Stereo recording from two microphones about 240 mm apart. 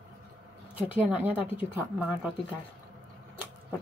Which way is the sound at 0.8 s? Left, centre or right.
Centre.